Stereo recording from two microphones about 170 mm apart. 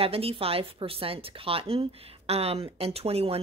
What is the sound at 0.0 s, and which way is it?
Speech, 35° right (ahead or behind).